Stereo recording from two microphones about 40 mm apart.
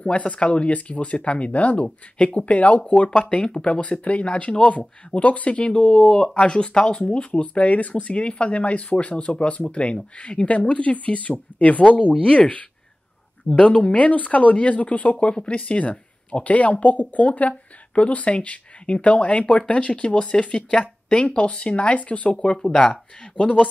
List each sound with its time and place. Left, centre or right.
0.0 s speech: left
12.1 s speech: left
22.6 s speech: centre
23.3 s speech: left